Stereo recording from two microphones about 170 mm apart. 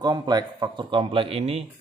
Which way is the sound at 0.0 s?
25° right (ahead or behind).